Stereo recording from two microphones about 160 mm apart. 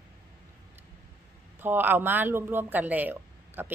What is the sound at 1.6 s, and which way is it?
Speech, 10° right (ahead or behind).